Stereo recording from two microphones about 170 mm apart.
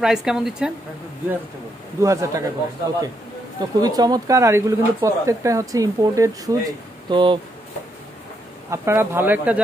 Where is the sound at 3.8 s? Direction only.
25° right (ahead or behind).